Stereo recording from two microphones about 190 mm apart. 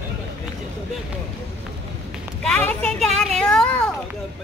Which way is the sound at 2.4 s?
5° left (ahead or behind).